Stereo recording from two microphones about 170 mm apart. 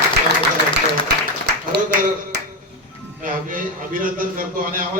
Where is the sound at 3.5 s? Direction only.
55° right (ahead or behind).